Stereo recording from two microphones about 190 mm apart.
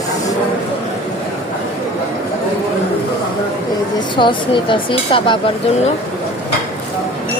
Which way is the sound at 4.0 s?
25° left (ahead or behind).